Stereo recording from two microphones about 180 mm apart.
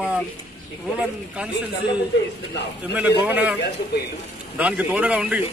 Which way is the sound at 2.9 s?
10° right (ahead or behind).